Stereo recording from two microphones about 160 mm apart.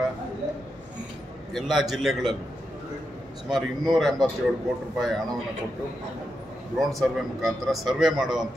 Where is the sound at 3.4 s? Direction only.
Centre (ahead or behind).